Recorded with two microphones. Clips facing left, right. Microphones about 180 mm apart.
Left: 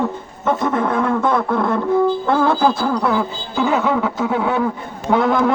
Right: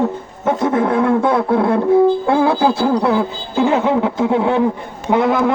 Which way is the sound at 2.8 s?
30° right (ahead or behind).